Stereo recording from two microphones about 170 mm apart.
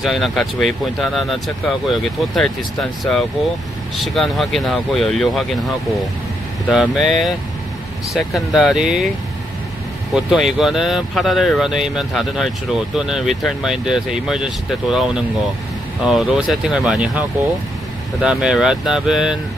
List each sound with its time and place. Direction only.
0.0 s speech: centre (ahead or behind)
6.7 s speech: centre (ahead or behind)
8.5 s speech: 5° right (ahead or behind)
10.1 s speech: centre (ahead or behind)
18.2 s speech: 5° right (ahead or behind)